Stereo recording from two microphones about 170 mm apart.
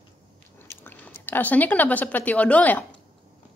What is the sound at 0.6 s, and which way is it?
Speech, 15° left (ahead or behind).